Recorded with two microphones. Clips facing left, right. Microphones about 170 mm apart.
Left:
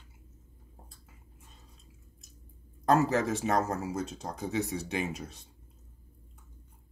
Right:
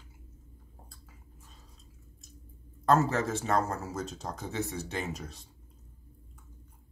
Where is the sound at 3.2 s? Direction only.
15° left (ahead or behind).